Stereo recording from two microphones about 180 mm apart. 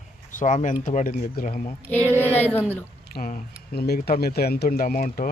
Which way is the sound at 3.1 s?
55° left (ahead or behind).